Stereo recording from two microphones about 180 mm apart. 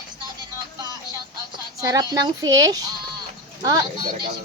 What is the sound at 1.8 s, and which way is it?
Speech, 20° right (ahead or behind).